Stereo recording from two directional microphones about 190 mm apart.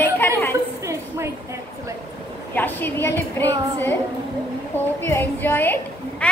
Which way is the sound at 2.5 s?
10° left (ahead or behind).